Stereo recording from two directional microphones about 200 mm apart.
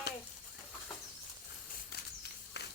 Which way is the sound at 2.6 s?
60° left (ahead or behind).